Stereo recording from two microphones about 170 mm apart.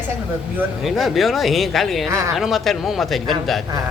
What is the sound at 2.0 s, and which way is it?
Speech, 20° right (ahead or behind).